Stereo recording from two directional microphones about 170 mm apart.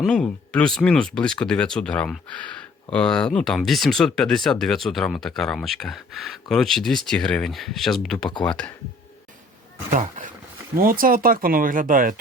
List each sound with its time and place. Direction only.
0.0 s speech: 5° left (ahead or behind)
10.8 s speech: 55° right (ahead or behind)